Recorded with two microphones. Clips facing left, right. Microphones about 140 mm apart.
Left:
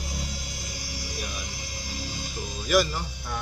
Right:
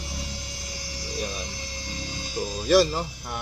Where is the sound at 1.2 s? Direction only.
30° right (ahead or behind).